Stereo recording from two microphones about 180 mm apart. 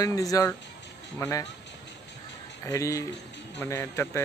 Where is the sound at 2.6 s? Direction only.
15° left (ahead or behind).